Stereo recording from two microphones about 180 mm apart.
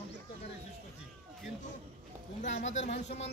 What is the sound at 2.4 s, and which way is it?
Speech, 40° left (ahead or behind).